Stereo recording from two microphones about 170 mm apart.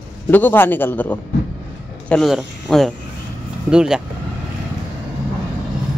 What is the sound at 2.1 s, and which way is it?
Speech, centre (ahead or behind).